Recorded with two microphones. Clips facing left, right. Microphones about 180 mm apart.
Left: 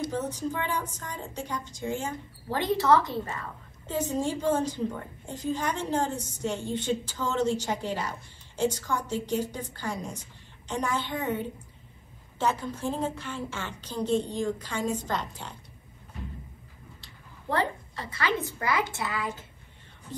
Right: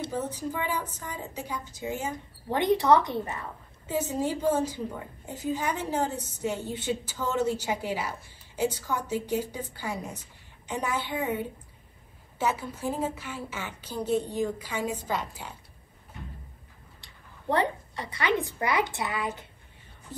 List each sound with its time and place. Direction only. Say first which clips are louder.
0.1 s a woman's voice: left 1 dB; 10° right (ahead or behind)
2.5 s a woman's voice: right 2 dB; 20° right (ahead or behind)
3.8 s a woman's voice: even; 10° right (ahead or behind)
17.5 s a woman's voice: right 2 dB; 20° right (ahead or behind)
20.1 s a woman's voice: left 2 dB; 10° right (ahead or behind)